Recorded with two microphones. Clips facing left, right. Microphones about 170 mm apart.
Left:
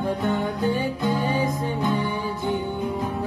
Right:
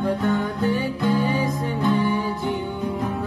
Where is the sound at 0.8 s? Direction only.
20° left (ahead or behind).